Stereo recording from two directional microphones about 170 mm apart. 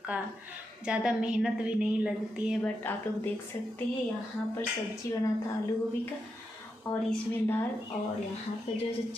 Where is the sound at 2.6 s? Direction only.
10° left (ahead or behind).